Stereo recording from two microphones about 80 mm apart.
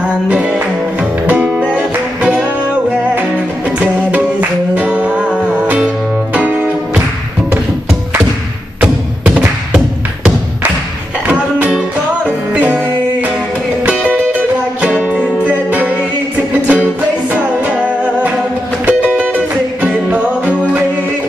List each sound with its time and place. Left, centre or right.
0.3 s music: centre
3.8 s music: centre
8.8 s music: centre
11.2 s music: centre
18.9 s music: centre